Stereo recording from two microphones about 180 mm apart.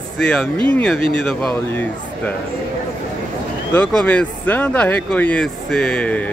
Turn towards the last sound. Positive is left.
turn(degrees=5)  # may be behind; listen again after turning